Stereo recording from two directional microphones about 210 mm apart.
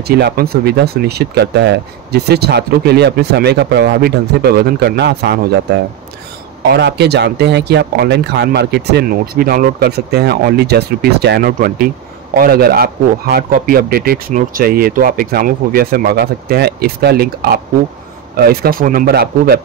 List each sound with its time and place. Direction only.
0.1 s speech: 45° right (ahead or behind)
6.7 s speech: 50° right (ahead or behind)